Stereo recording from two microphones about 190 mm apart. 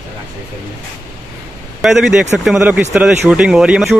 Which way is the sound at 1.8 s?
Centre (ahead or behind).